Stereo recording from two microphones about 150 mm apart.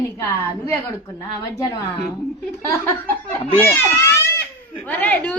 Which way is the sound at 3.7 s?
15° left (ahead or behind).